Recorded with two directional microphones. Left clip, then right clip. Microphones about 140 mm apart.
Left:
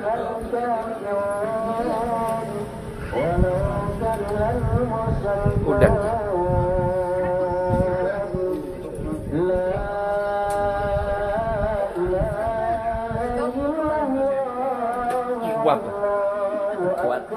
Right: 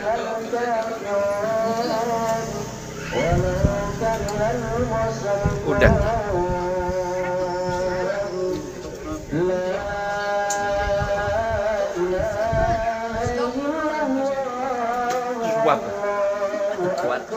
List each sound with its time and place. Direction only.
5.7 s speech: 15° left (ahead or behind)
15.4 s music: 15° left (ahead or behind)